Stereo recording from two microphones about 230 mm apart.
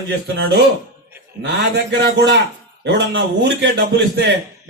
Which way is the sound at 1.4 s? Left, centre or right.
Right.